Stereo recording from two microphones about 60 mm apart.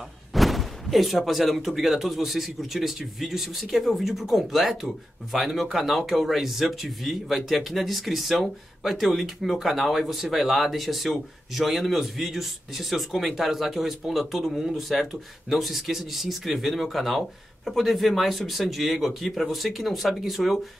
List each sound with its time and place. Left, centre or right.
0.3 s speech: centre